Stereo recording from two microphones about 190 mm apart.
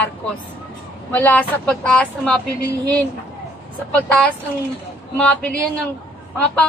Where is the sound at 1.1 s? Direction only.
10° left (ahead or behind).